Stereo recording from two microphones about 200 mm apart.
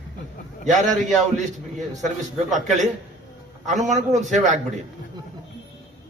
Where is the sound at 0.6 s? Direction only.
40° right (ahead or behind).